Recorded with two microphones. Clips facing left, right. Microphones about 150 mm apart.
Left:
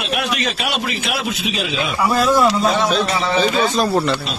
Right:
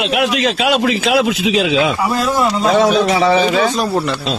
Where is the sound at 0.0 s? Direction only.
80° right.